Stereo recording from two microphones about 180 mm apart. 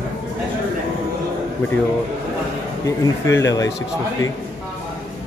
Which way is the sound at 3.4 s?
20° left (ahead or behind).